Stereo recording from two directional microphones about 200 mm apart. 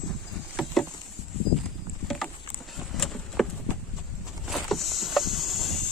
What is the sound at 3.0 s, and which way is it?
Vehicle, centre (ahead or behind).